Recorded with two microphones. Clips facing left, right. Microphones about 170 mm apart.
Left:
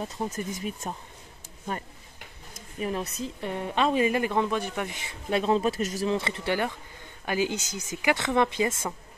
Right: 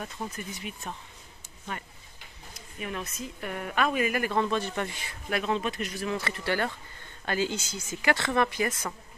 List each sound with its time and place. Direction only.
0.3 s speech: 45° left (ahead or behind)
2.8 s a woman's voice: 35° left (ahead or behind)
6.0 s a woman's voice: 25° left (ahead or behind)